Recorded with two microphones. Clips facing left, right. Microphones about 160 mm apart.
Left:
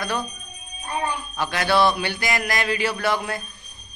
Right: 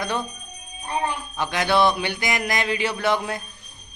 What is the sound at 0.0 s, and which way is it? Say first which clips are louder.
Mantra: even; 20° right (ahead or behind).